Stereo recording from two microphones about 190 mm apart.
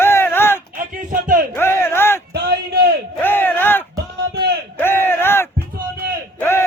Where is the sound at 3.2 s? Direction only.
10° left (ahead or behind).